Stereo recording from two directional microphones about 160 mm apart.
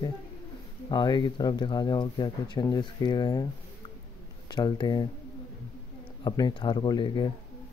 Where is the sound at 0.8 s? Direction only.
25° left (ahead or behind).